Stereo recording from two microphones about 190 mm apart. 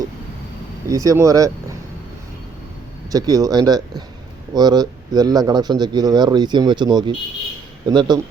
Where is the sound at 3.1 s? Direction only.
20° right (ahead or behind).